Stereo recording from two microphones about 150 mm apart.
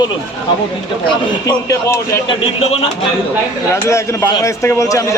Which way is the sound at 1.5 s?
20° left (ahead or behind).